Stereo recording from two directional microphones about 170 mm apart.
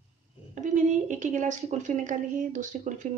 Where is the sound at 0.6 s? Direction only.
45° right (ahead or behind).